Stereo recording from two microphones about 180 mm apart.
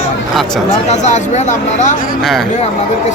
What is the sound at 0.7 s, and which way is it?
Speech, 40° left (ahead or behind).